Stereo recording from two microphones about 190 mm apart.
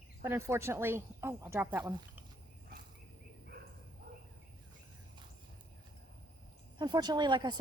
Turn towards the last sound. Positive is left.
turn(degrees=-25)  # may be behind; listen again after turning